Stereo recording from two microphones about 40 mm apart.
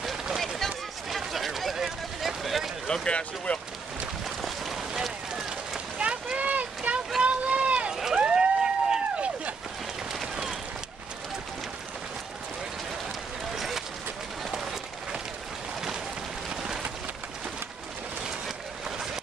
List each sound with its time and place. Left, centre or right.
0.6 s a sound: centre
2.9 s speech: centre
3.5 s speech: left
5.0 s rain on surface: centre
6.3 s a sound: right
7.2 s boat: right
7.9 s vehicle: centre
8.2 s vehicle: right
14.5 s applause: centre